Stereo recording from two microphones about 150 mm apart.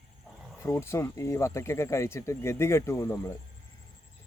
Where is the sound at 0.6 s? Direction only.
20° left (ahead or behind).